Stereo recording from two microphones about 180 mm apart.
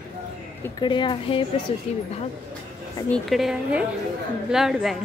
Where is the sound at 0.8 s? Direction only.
25° left (ahead or behind).